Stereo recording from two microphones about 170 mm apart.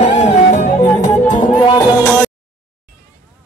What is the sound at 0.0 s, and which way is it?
Music, 45° left (ahead or behind).